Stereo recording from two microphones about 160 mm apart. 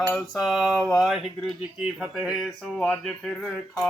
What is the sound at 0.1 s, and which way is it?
Speech, centre (ahead or behind).